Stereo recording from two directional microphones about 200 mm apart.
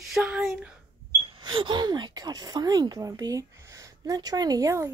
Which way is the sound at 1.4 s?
25° right (ahead or behind).